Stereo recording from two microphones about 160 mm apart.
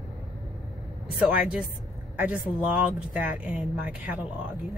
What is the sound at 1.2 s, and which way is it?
Speech, 5° right (ahead or behind).